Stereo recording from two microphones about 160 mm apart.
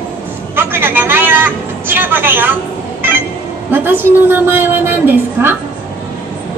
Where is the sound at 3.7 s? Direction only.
15° right (ahead or behind).